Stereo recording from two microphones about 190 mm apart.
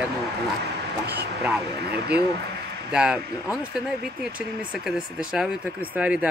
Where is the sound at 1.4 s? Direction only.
5° right (ahead or behind).